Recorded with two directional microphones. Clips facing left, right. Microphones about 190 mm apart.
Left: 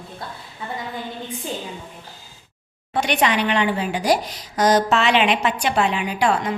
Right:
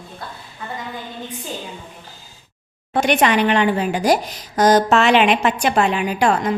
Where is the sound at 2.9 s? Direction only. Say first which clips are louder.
Right 4 dB; 50° right (ahead or behind).